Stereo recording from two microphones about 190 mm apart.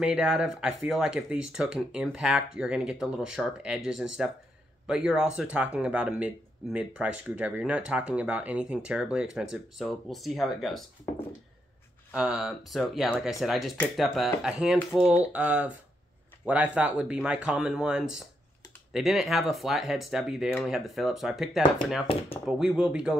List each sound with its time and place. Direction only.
0.0 s speech: 5° right (ahead or behind)
12.1 s speech: 5° right (ahead or behind)
22.0 s speech: 30° left (ahead or behind)
22.5 s speech: 5° right (ahead or behind)